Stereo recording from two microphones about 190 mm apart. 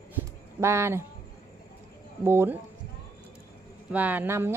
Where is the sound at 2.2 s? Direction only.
10° right (ahead or behind).